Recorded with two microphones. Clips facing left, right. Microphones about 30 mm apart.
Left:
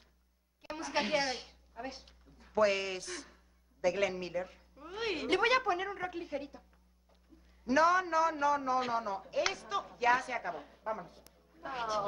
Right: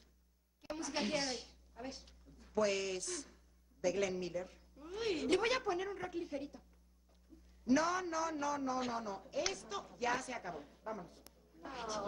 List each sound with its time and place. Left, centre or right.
0.6 s a woman's voice: left
7.6 s a man's voice: left